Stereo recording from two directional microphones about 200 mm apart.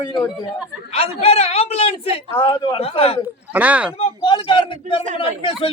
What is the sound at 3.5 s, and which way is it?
Speech, 5° right (ahead or behind).